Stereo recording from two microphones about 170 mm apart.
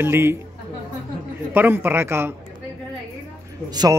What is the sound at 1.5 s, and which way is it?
Speech, 10° right (ahead or behind).